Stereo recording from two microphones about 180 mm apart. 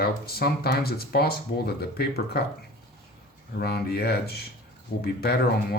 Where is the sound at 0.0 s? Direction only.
60° left (ahead or behind).